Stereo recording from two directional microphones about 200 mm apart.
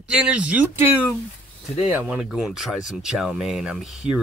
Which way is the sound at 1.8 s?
10° right (ahead or behind).